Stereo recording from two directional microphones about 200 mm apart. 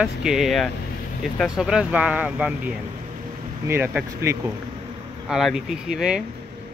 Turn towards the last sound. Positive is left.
turn(degrees=-5)  # may be behind; listen again after turning